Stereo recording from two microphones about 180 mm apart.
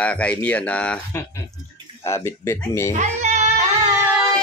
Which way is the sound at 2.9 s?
40° right (ahead or behind).